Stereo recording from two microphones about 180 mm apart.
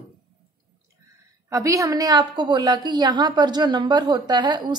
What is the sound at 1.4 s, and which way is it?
A woman's voice, 20° right (ahead or behind).